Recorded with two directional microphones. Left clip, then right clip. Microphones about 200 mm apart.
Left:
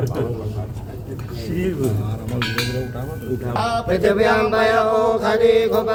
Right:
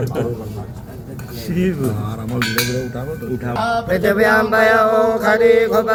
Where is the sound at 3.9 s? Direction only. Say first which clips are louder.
Right 2 dB; centre (ahead or behind).